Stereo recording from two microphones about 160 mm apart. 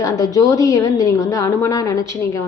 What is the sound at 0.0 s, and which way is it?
A woman's voice, 20° left (ahead or behind).